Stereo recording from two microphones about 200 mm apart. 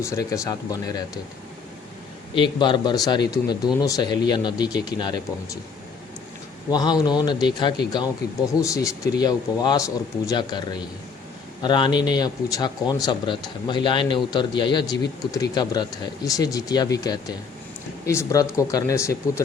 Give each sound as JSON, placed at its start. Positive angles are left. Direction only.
{"t": 0.0, "sound": "speech", "side_deg": 15}
{"t": 2.3, "sound": "speech", "side_deg": 25}
{"t": 6.7, "sound": "speech", "side_deg": 20}
{"t": 8.2, "sound": "speech", "side_deg": 50}
{"t": 8.6, "sound": "speech", "side_deg": 15}